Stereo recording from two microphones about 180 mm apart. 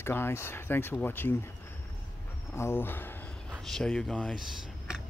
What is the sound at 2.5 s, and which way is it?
Speech, 15° left (ahead or behind).